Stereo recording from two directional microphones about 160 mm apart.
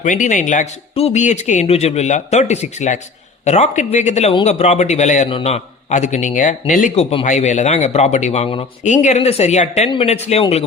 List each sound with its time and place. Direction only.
0.0 s speech: 50° left (ahead or behind)
8.8 s speech: 50° left (ahead or behind)